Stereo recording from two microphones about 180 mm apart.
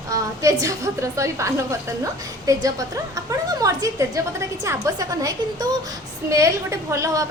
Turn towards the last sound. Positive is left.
turn(degrees=-15)  # may be behind; listen again after turning